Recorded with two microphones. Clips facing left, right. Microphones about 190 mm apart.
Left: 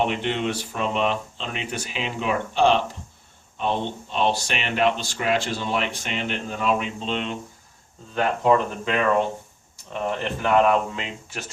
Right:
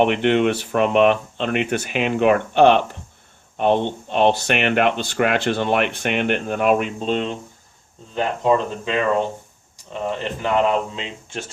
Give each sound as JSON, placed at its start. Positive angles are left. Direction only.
{"t": 0.0, "sound": "speech", "side_deg": -60}
{"t": 8.1, "sound": "speech", "side_deg": -20}